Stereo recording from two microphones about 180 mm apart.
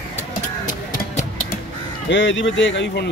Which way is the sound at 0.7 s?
50° left (ahead or behind).